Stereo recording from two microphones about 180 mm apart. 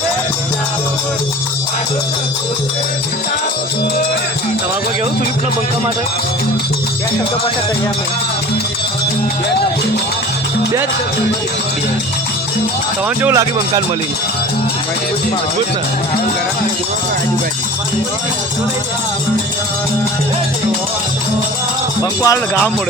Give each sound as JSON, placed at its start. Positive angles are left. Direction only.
{"t": 13.2, "sound": "speech", "side_deg": -20}
{"t": 22.2, "sound": "speech", "side_deg": 15}